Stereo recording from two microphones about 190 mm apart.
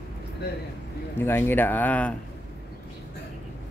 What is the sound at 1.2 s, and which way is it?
Speech, 10° left (ahead or behind).